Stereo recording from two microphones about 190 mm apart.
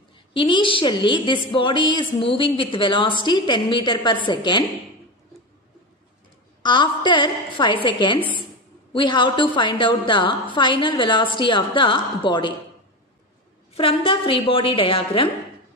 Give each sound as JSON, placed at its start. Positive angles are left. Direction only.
{"t": 0.3, "sound": "a woman's voice", "side_deg": 25}
{"t": 6.6, "sound": "a woman's voice", "side_deg": 25}
{"t": 13.7, "sound": "a woman's voice", "side_deg": 30}